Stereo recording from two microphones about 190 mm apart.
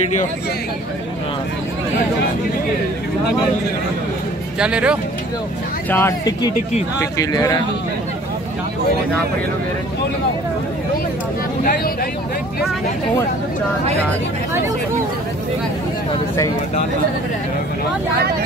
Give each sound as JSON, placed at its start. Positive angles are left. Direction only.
{"t": 4.6, "sound": "speech", "side_deg": -5}
{"t": 5.9, "sound": "speech", "side_deg": 10}
{"t": 11.6, "sound": "a sound", "side_deg": 50}